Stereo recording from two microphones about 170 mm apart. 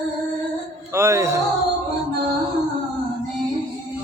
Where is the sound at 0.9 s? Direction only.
15° right (ahead or behind).